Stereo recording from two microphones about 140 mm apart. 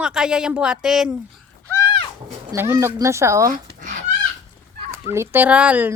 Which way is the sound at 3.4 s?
65° right (ahead or behind).